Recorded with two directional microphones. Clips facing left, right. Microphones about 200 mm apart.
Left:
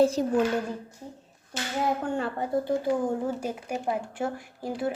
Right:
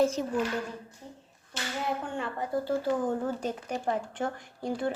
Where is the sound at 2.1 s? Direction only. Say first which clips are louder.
Left 4 dB; 35° left (ahead or behind).